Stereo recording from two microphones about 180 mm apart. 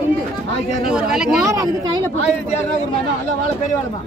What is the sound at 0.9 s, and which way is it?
Speech, 5° right (ahead or behind).